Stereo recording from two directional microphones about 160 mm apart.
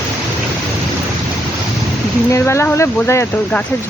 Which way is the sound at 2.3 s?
15° left (ahead or behind).